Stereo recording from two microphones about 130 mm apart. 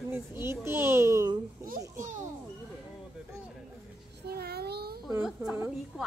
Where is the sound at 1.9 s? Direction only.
80° right.